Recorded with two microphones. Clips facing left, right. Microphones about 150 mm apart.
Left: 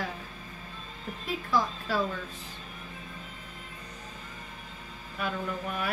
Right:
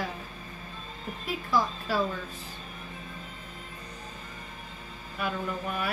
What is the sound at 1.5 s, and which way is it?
Speech, 10° right (ahead or behind).